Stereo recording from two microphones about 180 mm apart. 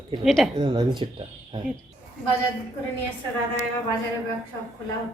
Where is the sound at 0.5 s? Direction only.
25° right (ahead or behind).